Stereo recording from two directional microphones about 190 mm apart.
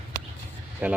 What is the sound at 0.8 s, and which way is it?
Speech, 10° right (ahead or behind).